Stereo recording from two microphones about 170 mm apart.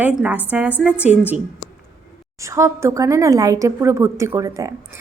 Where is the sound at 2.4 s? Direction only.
15° right (ahead or behind).